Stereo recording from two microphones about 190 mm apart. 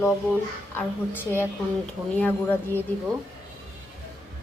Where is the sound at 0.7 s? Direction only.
10° left (ahead or behind).